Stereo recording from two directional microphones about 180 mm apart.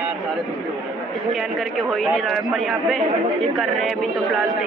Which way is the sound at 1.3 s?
Centre (ahead or behind).